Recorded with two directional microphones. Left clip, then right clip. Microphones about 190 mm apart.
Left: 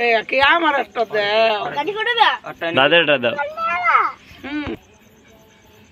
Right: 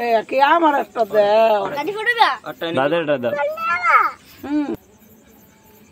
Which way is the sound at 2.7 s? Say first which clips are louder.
Left 5 dB; 5° right (ahead or behind).